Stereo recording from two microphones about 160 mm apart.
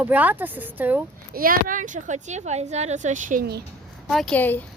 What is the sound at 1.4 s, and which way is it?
A woman's voice, 60° right (ahead or behind).